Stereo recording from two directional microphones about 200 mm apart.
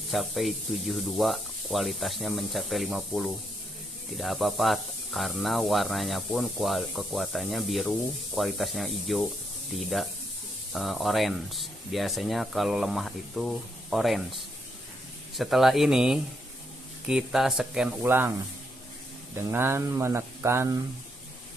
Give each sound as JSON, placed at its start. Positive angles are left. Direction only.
{"t": 0.1, "sound": "speech", "side_deg": 0}
{"t": 19.3, "sound": "speech", "side_deg": -10}